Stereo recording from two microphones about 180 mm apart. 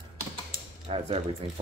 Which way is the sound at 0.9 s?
30° right (ahead or behind).